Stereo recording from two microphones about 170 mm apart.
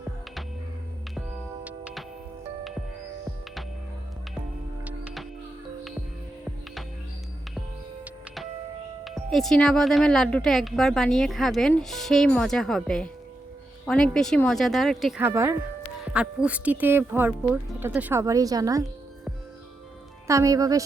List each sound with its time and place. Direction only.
1.6 s music: 5° right (ahead or behind)
4.9 s music: 5° right (ahead or behind)
9.0 s speech: centre (ahead or behind)
15.2 s speech: 15° right (ahead or behind)
20.2 s a woman's voice: 20° right (ahead or behind)